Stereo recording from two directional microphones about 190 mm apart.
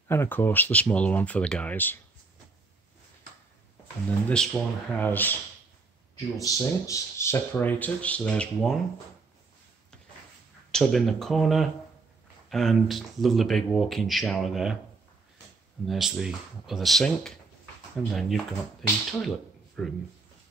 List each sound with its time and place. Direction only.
0.1 s speech: 10° left (ahead or behind)
4.3 s speech: 5° left (ahead or behind)
10.7 s speech: centre (ahead or behind)
15.9 s speech: centre (ahead or behind)